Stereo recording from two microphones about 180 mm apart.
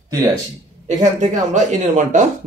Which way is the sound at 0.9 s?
40° right (ahead or behind).